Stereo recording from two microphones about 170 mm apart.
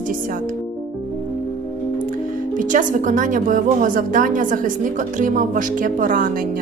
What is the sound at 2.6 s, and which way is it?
A woman's voice, 50° right (ahead or behind).